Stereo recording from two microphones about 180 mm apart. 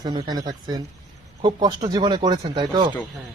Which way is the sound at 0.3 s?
20° right (ahead or behind).